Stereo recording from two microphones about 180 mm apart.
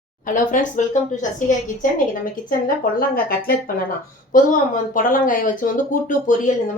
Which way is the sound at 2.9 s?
55° left (ahead or behind).